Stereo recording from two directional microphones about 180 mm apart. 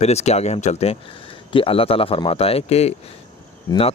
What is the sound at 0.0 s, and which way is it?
Speech, 35° left (ahead or behind).